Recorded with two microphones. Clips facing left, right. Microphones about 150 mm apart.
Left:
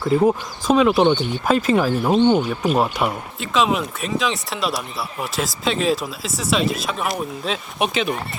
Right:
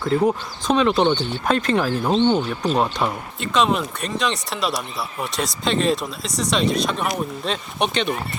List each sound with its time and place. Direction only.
0.0 s speech: 5° left (ahead or behind)